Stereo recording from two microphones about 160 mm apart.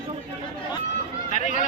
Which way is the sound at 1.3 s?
50° left (ahead or behind).